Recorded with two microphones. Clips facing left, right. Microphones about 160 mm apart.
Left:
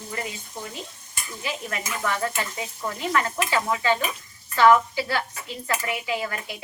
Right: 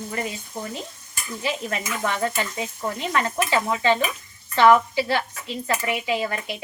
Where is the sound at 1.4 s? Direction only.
25° right (ahead or behind).